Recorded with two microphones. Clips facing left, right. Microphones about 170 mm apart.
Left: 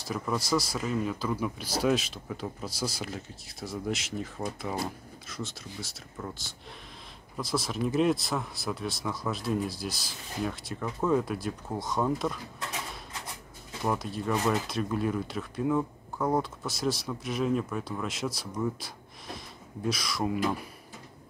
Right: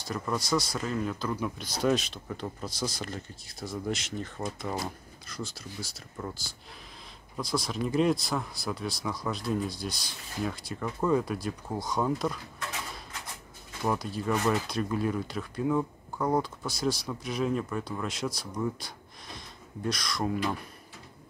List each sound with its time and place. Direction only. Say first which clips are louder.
0.0 s speech: left 1 dB; centre (ahead or behind)
13.8 s speech: even; centre (ahead or behind)